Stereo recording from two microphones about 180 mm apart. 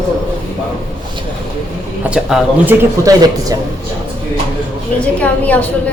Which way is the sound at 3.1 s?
20° right (ahead or behind).